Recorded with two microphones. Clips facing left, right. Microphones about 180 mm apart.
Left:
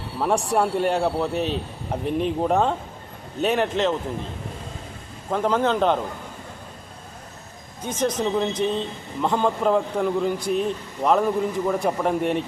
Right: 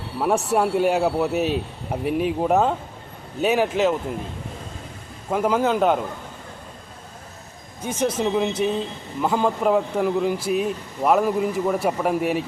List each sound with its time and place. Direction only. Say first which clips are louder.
0.2 s speech: right 1 dB; 5° right (ahead or behind)
5.3 s speech: right 1 dB; 10° right (ahead or behind)
7.8 s speech: right 1 dB; 10° right (ahead or behind)